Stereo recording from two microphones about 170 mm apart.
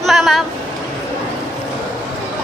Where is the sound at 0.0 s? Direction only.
Centre (ahead or behind).